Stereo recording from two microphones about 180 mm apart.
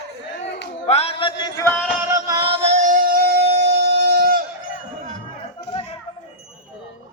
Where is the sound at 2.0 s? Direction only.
20° right (ahead or behind).